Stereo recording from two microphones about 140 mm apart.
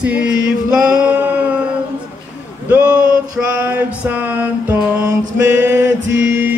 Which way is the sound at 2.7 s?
10° right (ahead or behind).